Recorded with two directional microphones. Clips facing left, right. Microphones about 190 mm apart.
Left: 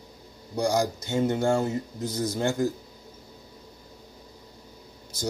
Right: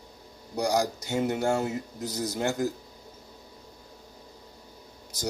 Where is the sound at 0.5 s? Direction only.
15° right (ahead or behind).